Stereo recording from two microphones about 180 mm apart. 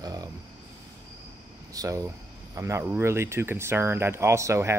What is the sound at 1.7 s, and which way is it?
Speech, 15° right (ahead or behind).